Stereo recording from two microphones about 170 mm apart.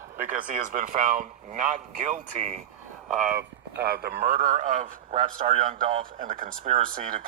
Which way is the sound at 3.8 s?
70° right (ahead or behind).